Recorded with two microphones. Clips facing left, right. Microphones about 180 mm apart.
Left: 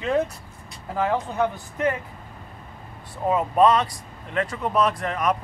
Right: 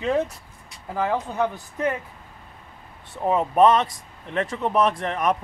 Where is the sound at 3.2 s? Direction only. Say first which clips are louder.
Right 1 dB; 25° right (ahead or behind).